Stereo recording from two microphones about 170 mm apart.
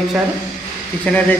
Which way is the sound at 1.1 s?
10° left (ahead or behind).